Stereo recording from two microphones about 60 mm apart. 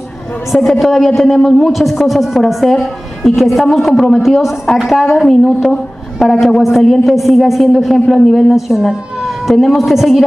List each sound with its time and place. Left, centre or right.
0.5 s a man's voice: centre